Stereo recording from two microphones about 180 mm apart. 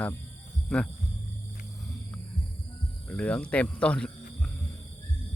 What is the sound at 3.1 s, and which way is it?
Speech, 5° left (ahead or behind).